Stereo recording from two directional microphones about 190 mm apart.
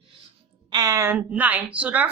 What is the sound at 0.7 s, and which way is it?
A woman's voice, 15° right (ahead or behind).